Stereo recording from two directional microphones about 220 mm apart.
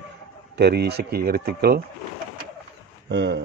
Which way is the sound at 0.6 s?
50° right (ahead or behind).